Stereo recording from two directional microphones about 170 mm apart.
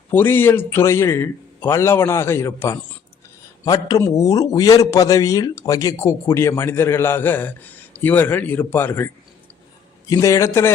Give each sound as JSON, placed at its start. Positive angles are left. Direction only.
{"t": 0.1, "sound": "a man's voice", "side_deg": 10}
{"t": 10.1, "sound": "a man's voice", "side_deg": 20}